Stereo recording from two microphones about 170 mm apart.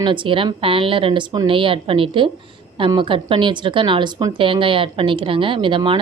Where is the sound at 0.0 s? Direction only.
30° right (ahead or behind).